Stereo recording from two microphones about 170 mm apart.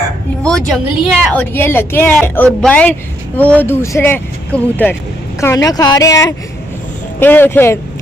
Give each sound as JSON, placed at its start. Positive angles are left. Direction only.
{"t": 0.4, "sound": "speech", "side_deg": 5}